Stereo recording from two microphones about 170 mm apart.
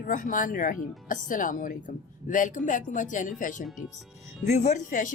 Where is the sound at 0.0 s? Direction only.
50° left (ahead or behind).